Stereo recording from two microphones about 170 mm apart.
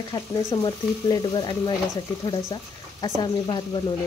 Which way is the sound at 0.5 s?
25° left (ahead or behind).